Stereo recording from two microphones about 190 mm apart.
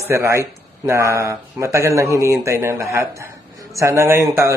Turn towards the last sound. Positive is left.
turn(degrees=-15)  # may be behind; listen again after turning